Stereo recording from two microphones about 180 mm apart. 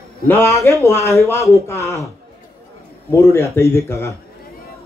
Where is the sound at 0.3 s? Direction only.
15° left (ahead or behind).